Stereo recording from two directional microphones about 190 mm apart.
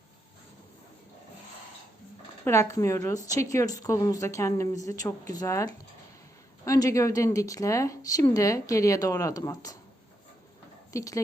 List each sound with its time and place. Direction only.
2.4 s speech: 15° left (ahead or behind)
10.9 s speech: 15° left (ahead or behind)